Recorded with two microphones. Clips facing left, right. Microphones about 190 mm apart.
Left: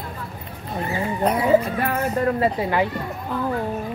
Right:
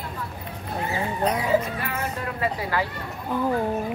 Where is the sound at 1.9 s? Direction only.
40° left (ahead or behind).